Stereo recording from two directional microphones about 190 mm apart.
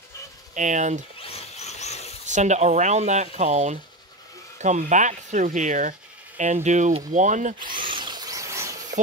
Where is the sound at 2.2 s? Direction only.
40° right (ahead or behind).